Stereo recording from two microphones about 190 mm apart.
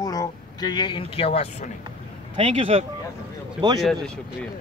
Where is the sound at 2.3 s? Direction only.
30° right (ahead or behind).